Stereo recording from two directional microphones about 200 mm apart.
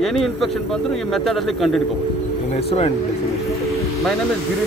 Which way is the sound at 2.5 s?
30° left (ahead or behind).